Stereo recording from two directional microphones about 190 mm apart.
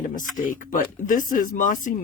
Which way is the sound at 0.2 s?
45° left (ahead or behind).